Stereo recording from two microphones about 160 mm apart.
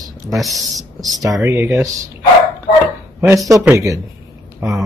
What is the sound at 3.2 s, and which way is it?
Speech, 20° right (ahead or behind).